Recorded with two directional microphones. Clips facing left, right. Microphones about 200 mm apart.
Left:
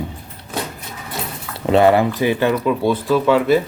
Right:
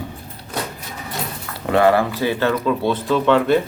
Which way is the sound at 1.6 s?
20° left (ahead or behind).